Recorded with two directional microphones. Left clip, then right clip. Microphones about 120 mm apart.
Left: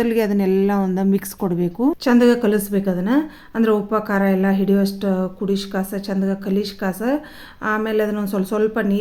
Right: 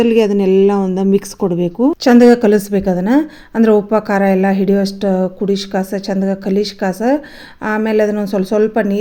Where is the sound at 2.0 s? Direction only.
50° right (ahead or behind).